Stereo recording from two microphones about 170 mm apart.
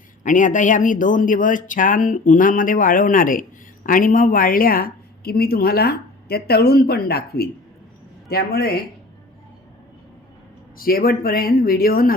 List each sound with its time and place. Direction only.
0.2 s a woman's voice: 50° left (ahead or behind); by 8.8 s 65° left (ahead or behind)
10.8 s a woman's voice: 60° left (ahead or behind)